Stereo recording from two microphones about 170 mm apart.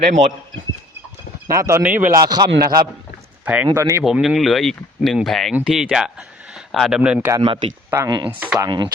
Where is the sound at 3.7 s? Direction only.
20° right (ahead or behind).